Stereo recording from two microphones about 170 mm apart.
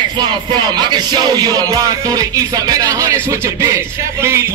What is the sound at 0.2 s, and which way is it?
Music, 25° right (ahead or behind).